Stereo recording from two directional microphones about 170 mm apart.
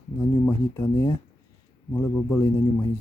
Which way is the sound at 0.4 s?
20° left (ahead or behind).